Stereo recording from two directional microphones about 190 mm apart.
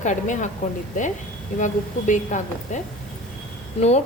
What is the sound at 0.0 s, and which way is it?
Speech, 40° left (ahead or behind).